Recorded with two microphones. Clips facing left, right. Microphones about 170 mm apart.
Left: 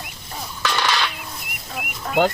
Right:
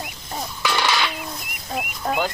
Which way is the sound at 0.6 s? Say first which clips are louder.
Even; 10° right (ahead or behind).